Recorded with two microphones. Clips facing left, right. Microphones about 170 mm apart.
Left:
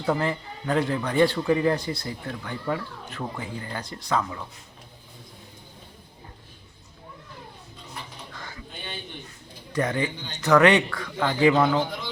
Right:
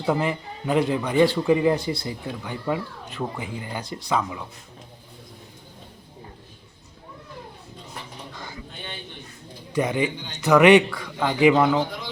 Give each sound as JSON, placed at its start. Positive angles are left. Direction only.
{"t": 0.0, "sound": "a man's voice", "side_deg": -10}
{"t": 9.7, "sound": "a man's voice", "side_deg": -15}